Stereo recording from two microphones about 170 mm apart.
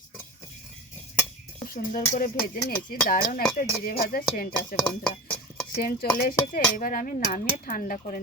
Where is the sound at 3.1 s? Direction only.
55° left (ahead or behind).